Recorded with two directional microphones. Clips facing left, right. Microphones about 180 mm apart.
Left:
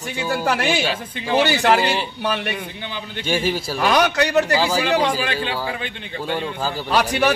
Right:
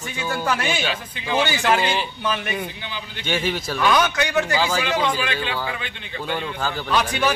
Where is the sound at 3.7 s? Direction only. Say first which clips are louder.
Left 2 dB; 40° left (ahead or behind).